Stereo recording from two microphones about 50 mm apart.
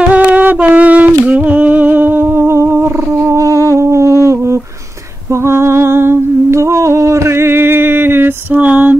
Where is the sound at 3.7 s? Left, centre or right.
Right.